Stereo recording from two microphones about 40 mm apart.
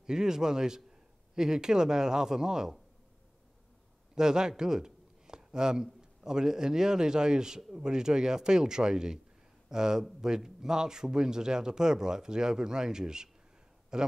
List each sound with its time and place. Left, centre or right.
0.0 s speech: centre
4.1 s speech: centre